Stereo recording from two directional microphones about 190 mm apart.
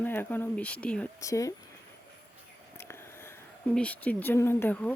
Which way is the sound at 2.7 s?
15° left (ahead or behind).